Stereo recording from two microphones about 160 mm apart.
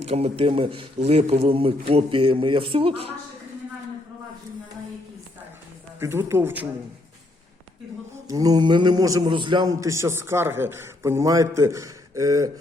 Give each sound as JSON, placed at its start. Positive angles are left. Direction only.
{"t": 0.0, "sound": "speech", "side_deg": -40}
{"t": 6.0, "sound": "speech", "side_deg": -15}
{"t": 8.3, "sound": "a man's voice", "side_deg": -20}